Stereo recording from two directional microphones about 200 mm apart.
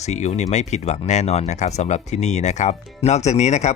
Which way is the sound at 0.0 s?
35° left (ahead or behind).